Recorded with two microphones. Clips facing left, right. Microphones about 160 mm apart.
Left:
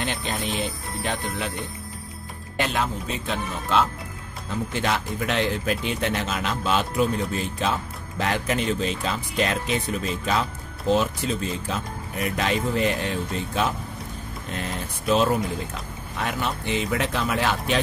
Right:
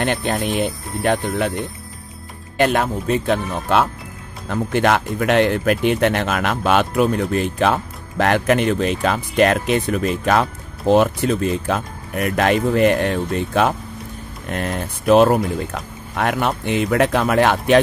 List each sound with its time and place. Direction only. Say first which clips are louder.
0.0 s speech: right 8 dB; 60° right (ahead or behind)
2.6 s speech: right 8 dB; 55° right (ahead or behind)